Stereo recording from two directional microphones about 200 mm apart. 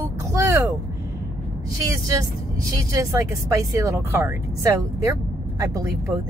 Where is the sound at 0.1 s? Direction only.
15° right (ahead or behind).